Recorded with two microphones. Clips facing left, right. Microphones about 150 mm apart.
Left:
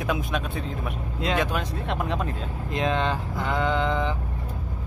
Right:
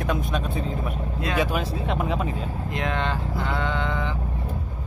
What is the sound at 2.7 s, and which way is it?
Speech, 20° left (ahead or behind).